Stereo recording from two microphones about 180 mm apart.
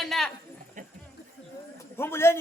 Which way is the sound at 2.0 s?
15° left (ahead or behind).